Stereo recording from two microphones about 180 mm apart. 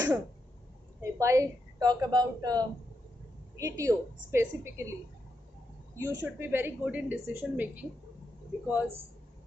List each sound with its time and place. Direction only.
1.0 s a woman's voice: 15° right (ahead or behind)
5.9 s a woman's voice: 20° right (ahead or behind)